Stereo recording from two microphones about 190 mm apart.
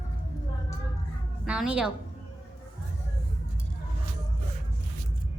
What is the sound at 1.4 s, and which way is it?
Speech, 5° right (ahead or behind).